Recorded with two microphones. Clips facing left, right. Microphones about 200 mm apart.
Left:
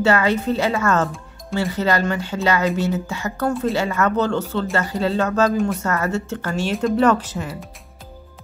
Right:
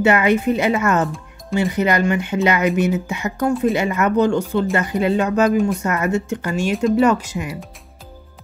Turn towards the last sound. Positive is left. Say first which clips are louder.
# even
turn(degrees=-10)  # may be behind; listen again after turning